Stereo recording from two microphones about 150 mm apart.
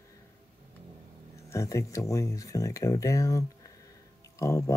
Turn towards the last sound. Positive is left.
turn(degrees=20)  # may be behind; listen again after turning